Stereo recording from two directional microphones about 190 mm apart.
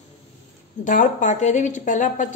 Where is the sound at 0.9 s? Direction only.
40° left (ahead or behind).